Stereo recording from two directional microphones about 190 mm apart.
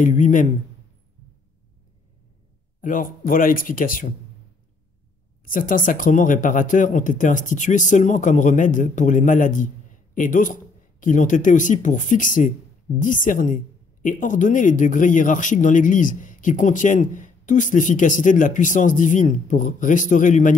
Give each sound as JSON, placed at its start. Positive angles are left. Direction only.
{"t": 0.0, "sound": "a man's voice", "side_deg": 40}
{"t": 2.8, "sound": "speech", "side_deg": 45}
{"t": 5.4, "sound": "speech", "side_deg": 45}